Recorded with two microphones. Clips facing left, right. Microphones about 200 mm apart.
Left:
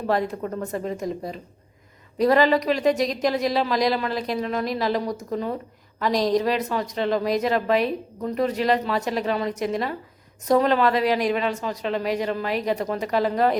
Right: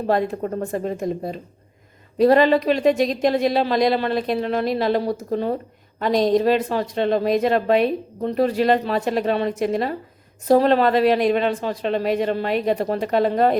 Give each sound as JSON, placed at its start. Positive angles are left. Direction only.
{"t": 0.1, "sound": "a woman's voice", "side_deg": -25}